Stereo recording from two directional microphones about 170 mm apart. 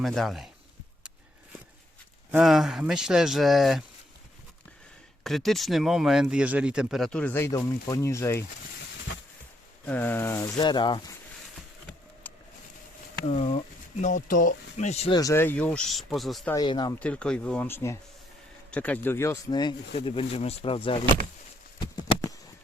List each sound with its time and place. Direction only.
0.0 s speech: centre (ahead or behind)
2.4 s speech: centre (ahead or behind)
5.2 s speech: centre (ahead or behind)
9.8 s speech: 10° left (ahead or behind)
10.6 s speech: 25° left (ahead or behind)
13.2 s speech: 40° left (ahead or behind)
15.1 s speech: 20° left (ahead or behind); by 16.5 s centre (ahead or behind)
16.6 s speech: 25° left (ahead or behind)
16.9 s speech: 5° left (ahead or behind); by 21.0 s 30° left (ahead or behind)
21.9 s a sound: 20° left (ahead or behind)